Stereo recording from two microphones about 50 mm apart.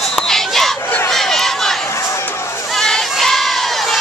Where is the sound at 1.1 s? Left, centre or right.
Centre.